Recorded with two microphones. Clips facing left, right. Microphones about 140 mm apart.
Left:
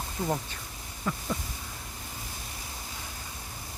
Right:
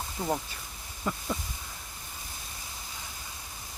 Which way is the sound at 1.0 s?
10° right (ahead or behind).